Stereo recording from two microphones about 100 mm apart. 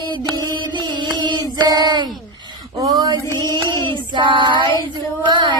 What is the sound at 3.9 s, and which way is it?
Child singing, 55° right (ahead or behind).